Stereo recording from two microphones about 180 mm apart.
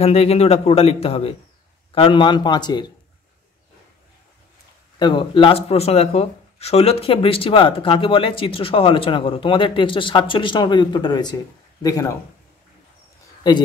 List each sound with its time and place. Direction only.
0.0 s a man's voice: 35° left (ahead or behind)
4.9 s speech: 25° left (ahead or behind)